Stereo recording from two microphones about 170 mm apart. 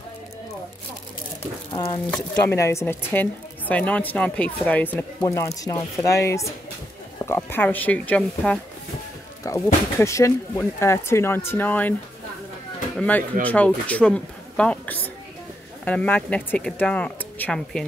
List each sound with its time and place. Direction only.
1.7 s speech: 30° left (ahead or behind)
2.4 s speech: 15° left (ahead or behind)
5.2 s speech: 20° left (ahead or behind)
9.5 s speech: 20° left (ahead or behind)
12.9 s speech: 10° left (ahead or behind)